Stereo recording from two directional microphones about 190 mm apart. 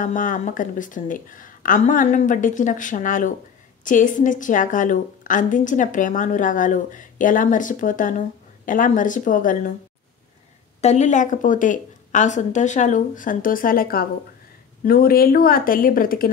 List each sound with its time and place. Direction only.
0.0 s a woman's voice: 45° left (ahead or behind)
10.8 s a woman's voice: 35° left (ahead or behind)